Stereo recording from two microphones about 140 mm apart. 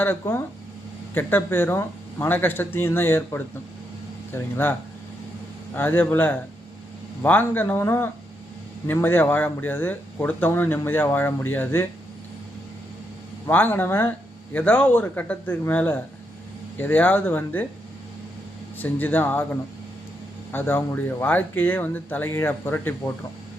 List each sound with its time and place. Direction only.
0.0 s speech: 15° left (ahead or behind)
5.7 s speech: 15° left (ahead or behind)
13.5 s speech: 15° left (ahead or behind)
18.8 s speech: 15° left (ahead or behind)